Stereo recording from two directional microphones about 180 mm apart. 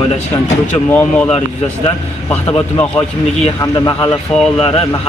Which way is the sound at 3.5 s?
20° left (ahead or behind).